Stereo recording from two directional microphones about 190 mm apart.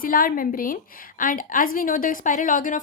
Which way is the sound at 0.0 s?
45° left (ahead or behind).